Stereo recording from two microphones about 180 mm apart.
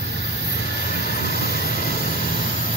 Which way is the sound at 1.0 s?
60° left (ahead or behind).